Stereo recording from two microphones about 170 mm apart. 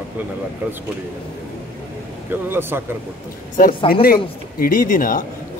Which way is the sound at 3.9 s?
60° left (ahead or behind).